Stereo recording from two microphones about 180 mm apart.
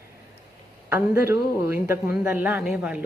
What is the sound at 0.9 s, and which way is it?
A man's voice, 15° right (ahead or behind).